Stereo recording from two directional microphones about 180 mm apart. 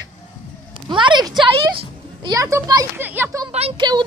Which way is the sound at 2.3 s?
20° right (ahead or behind).